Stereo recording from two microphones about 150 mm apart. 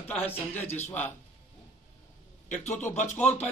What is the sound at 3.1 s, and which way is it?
Speech, 10° left (ahead or behind).